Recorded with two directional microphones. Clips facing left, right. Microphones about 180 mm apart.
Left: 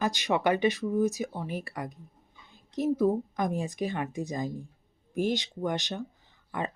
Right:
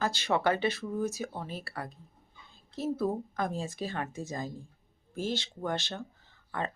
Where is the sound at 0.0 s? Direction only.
15° left (ahead or behind).